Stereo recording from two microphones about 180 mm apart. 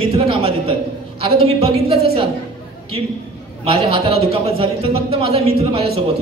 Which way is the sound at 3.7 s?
30° right (ahead or behind).